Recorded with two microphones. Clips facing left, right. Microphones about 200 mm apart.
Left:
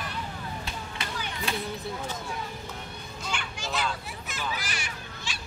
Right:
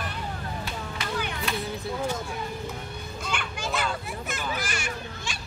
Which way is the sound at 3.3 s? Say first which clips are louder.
Right 3 dB; 55° right (ahead or behind).